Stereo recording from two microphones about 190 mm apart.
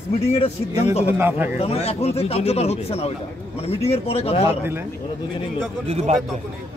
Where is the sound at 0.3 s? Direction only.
30° left (ahead or behind).